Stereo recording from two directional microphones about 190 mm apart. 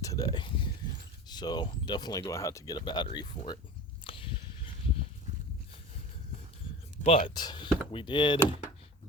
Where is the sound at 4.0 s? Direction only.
25° left (ahead or behind).